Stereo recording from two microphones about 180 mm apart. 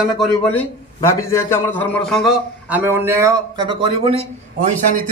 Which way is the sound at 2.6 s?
10° right (ahead or behind).